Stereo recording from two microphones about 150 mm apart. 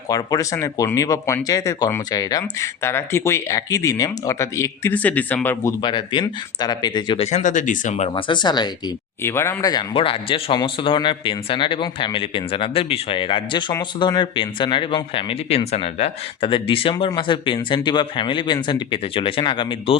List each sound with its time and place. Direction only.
0.1 s speech: 25° left (ahead or behind)
5.8 s speech: 30° left (ahead or behind)
7.2 s speech: 50° left (ahead or behind)
8.1 s speech: 30° left (ahead or behind)
9.2 s speech: 15° left (ahead or behind)
9.9 s a man's voice: 35° left (ahead or behind)